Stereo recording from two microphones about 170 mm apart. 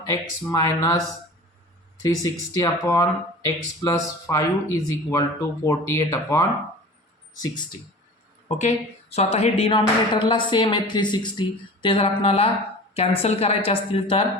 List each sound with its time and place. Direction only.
0.0 s speech: 20° left (ahead or behind)
2.0 s speech: 20° left (ahead or behind)
8.4 s a woman's voice: 40° left (ahead or behind)